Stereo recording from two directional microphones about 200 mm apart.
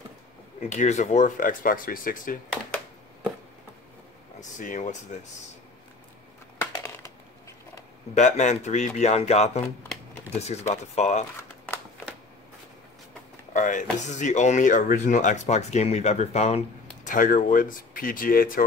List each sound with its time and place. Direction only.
0.6 s speech: 35° left (ahead or behind)
4.4 s speech: 40° left (ahead or behind)
6.6 s typing: 15° left (ahead or behind)
8.1 s speech: 35° left (ahead or behind)
13.5 s speech: 40° left (ahead or behind)